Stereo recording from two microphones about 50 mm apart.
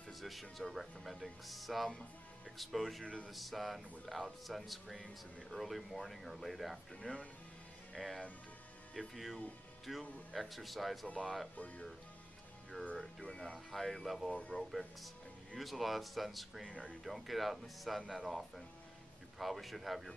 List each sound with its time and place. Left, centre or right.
0.2 s speech: centre
7.0 s speech: centre
7.9 s speech: centre
11.5 s speech: left
13.2 s speech: centre